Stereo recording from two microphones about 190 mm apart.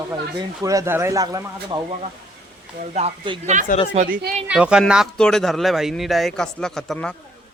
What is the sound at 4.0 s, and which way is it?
Speech, 50° right (ahead or behind).